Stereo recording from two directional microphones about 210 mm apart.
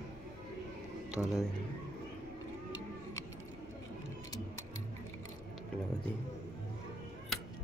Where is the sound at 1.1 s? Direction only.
Centre (ahead or behind).